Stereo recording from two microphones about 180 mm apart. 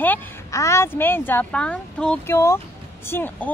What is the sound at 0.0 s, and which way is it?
Speech, 15° left (ahead or behind).